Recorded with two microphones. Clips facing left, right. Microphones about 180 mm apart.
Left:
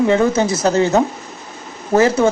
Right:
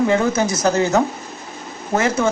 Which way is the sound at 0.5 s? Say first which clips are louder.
Left 2 dB; 30° left (ahead or behind).